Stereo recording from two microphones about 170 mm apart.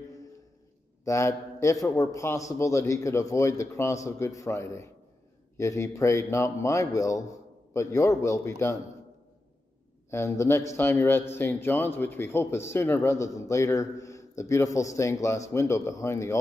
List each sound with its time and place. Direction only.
1.0 s a man's voice: 15° left (ahead or behind)
10.1 s a man's voice: 15° left (ahead or behind)